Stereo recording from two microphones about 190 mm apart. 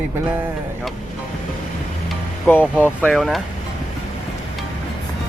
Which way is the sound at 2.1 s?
10° left (ahead or behind).